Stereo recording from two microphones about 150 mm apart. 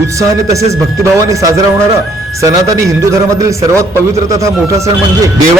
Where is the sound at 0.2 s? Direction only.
20° right (ahead or behind).